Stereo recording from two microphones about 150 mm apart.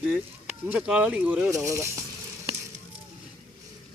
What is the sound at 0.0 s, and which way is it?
Speech, 10° right (ahead or behind).